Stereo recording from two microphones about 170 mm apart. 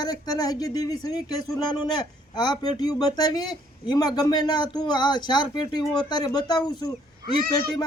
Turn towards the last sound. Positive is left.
turn(degrees=25)  # may be behind; listen again after turning